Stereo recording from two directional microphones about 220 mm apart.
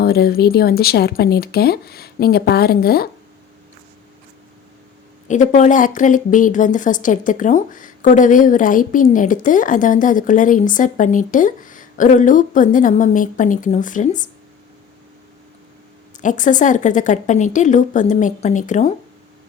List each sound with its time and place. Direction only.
0.0 s speech: 45° left (ahead or behind)
5.3 s a woman's voice: 35° left (ahead or behind)
16.1 s a woman's voice: 35° left (ahead or behind)